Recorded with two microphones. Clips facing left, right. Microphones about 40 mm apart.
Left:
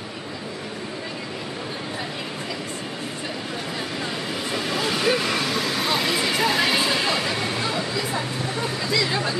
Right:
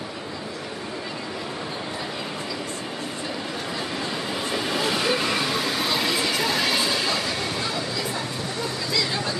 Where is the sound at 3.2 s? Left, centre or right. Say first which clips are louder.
Even; centre.